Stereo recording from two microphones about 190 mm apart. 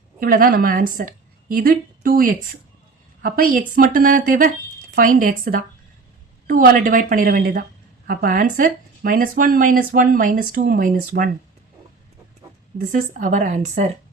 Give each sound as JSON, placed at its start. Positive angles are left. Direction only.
{"t": 0.2, "sound": "a woman's voice", "side_deg": -50}
{"t": 12.8, "sound": "speech", "side_deg": -40}